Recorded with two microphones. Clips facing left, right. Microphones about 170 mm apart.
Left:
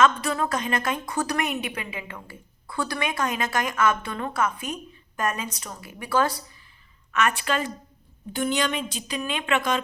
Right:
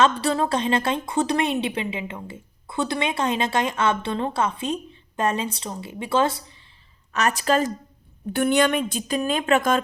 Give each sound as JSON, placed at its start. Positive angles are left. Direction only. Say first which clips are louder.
{"t": 0.0, "sound": "a woman's voice", "louder": "right 2 dB", "side_deg": -35}
{"t": 7.1, "sound": "a woman's voice", "louder": "right 3 dB", "side_deg": -35}
{"t": 8.3, "sound": "a woman's voice", "louder": "right 6 dB", "side_deg": -60}